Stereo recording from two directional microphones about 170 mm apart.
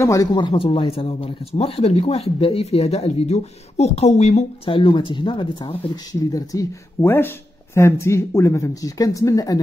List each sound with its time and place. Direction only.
0.0 s speech: 20° left (ahead or behind)
6.3 s speech: 20° left (ahead or behind)